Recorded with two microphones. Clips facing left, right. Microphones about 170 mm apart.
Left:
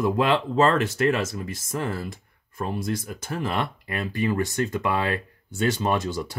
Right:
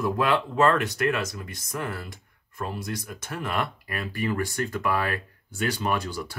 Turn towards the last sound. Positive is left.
turn(degrees=25)  # may be behind; listen again after turning